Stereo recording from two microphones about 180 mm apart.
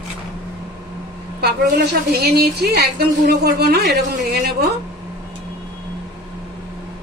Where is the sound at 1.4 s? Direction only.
65° right (ahead or behind).